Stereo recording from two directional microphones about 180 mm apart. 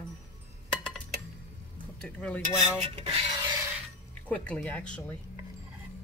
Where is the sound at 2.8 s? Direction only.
30° right (ahead or behind).